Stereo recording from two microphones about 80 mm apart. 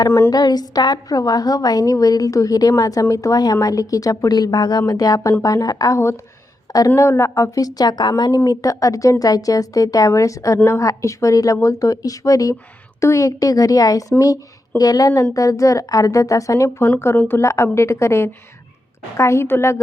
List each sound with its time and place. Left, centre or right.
0.3 s a woman's voice: left
6.9 s a woman's voice: left
8.4 s a woman's voice: left